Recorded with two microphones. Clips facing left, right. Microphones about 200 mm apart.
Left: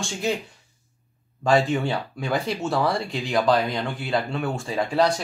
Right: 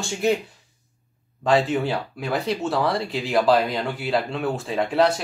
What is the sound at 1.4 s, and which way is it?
Speech, centre (ahead or behind).